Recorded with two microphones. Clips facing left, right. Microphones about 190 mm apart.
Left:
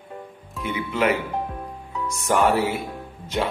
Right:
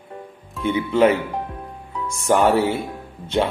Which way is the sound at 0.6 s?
25° right (ahead or behind).